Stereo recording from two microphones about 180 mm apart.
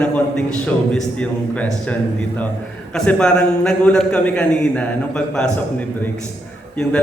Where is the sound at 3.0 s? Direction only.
5° left (ahead or behind).